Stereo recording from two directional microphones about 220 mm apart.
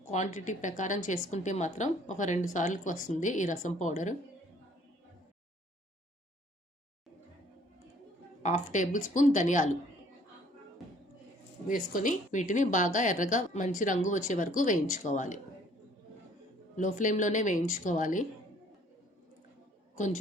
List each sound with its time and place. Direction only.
0.1 s a woman's voice: 35° left (ahead or behind)
8.4 s a woman's voice: 35° left (ahead or behind)
11.7 s a woman's voice: 35° left (ahead or behind)
16.7 s a woman's voice: 35° left (ahead or behind)